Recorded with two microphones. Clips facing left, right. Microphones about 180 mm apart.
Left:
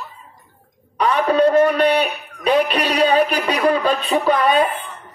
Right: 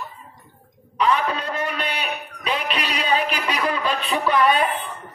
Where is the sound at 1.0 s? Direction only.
50° left (ahead or behind).